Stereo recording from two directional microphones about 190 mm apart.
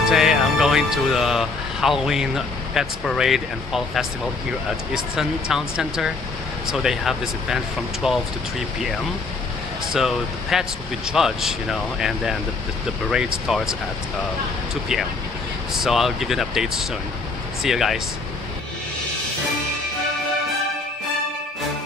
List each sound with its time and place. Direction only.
0.1 s speech: centre (ahead or behind)
9.9 s speech: centre (ahead or behind)
15.7 s speech: centre (ahead or behind)